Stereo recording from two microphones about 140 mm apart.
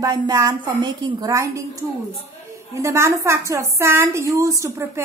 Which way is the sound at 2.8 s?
20° right (ahead or behind).